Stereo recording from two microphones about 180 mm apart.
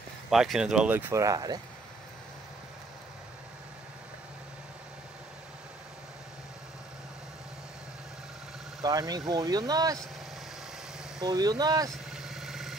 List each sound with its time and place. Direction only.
0.3 s speech: centre (ahead or behind); by 1.6 s 20° right (ahead or behind)
8.8 s speech: 20° right (ahead or behind)
11.2 s speech: 20° right (ahead or behind)
11.9 s vehicle: centre (ahead or behind)